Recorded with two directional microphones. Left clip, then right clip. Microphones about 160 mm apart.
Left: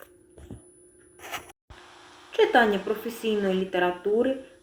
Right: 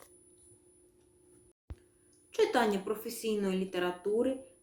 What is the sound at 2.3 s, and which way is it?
Speech, 40° right (ahead or behind).